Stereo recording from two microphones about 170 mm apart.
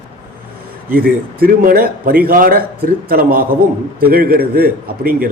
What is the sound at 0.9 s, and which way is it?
A man's voice, 60° right (ahead or behind).